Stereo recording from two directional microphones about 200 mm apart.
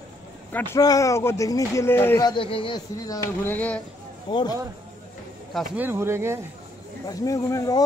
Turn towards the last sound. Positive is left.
turn(degrees=15)  # may be behind; listen again after turning